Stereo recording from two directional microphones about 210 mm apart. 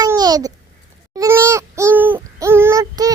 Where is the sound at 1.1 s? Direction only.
15° right (ahead or behind).